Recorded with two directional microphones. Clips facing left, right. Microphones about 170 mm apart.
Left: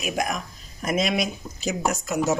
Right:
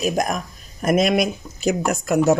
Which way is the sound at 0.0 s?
40° right (ahead or behind).